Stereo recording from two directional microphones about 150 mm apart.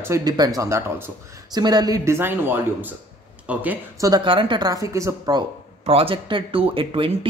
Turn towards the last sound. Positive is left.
turn(degrees=-35)  # may be behind; listen again after turning